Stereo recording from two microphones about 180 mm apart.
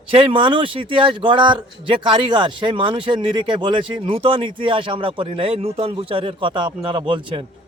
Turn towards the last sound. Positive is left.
turn(degrees=-30)  # may be behind; listen again after turning